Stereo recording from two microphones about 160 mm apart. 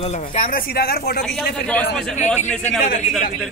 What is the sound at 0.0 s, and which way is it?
Speech, 45° left (ahead or behind).